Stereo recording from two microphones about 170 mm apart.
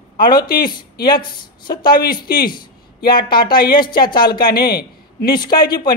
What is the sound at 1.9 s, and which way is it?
Speech, 60° left (ahead or behind).